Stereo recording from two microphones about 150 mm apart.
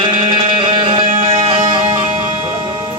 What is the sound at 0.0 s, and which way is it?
Music, 35° right (ahead or behind).